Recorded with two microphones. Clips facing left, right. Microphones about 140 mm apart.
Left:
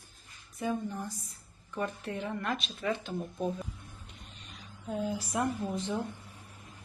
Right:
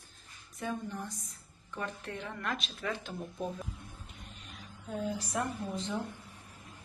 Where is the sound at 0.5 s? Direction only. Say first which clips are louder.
Left 4 dB; 5° left (ahead or behind).